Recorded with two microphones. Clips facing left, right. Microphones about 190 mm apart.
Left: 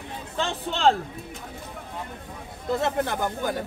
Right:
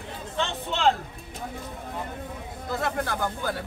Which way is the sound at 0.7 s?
35° left (ahead or behind).